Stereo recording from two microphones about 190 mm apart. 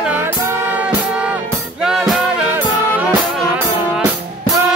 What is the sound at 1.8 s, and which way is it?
Music, centre (ahead or behind).